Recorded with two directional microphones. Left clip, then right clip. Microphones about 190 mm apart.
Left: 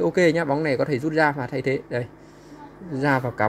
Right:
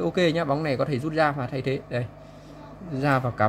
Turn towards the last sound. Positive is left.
turn(degrees=15)  # may be behind; listen again after turning